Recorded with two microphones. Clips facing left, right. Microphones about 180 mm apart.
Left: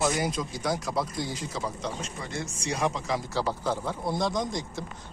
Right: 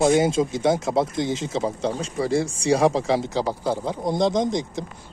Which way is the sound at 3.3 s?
15° right (ahead or behind).